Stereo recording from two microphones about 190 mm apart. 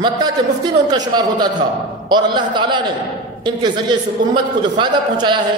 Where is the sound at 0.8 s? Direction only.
20° right (ahead or behind).